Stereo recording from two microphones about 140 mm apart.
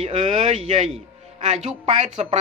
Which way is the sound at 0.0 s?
55° right (ahead or behind).